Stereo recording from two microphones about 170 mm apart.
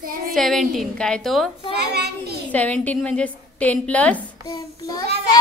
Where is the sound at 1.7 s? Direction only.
75° right (ahead or behind).